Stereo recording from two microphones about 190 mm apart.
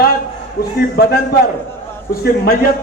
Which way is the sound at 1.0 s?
55° left (ahead or behind).